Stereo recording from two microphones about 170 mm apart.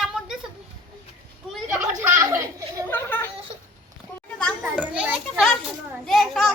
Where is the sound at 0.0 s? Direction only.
Centre (ahead or behind).